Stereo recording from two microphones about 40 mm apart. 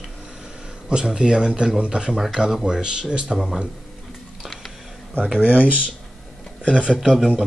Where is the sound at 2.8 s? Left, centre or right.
Right.